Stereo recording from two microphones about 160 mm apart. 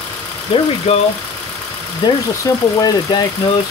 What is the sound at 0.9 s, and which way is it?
Speech, 40° left (ahead or behind).